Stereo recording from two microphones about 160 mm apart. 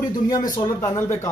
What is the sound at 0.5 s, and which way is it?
Speech, 25° left (ahead or behind).